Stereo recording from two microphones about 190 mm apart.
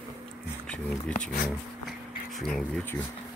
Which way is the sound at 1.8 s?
Centre (ahead or behind).